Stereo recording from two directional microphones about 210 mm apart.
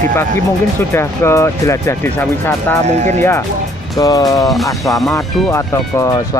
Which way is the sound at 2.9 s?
35° right (ahead or behind).